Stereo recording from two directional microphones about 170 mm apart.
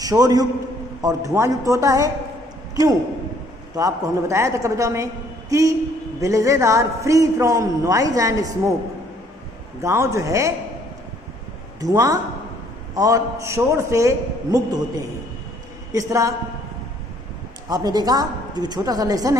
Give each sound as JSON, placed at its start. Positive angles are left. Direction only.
{"t": 0.0, "sound": "a man's voice", "side_deg": -20}
{"t": 3.7, "sound": "a man's voice", "side_deg": -20}
{"t": 9.8, "sound": "a man's voice", "side_deg": -15}
{"t": 11.8, "sound": "a man's voice", "side_deg": -20}
{"t": 15.9, "sound": "a man's voice", "side_deg": -20}
{"t": 17.6, "sound": "a man's voice", "side_deg": -25}